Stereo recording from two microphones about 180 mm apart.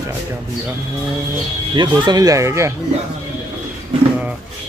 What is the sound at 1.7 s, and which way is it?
Speech, 25° right (ahead or behind).